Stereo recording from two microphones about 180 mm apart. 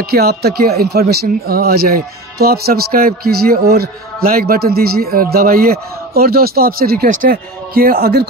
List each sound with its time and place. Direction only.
0.0 s speech: 60° right (ahead or behind)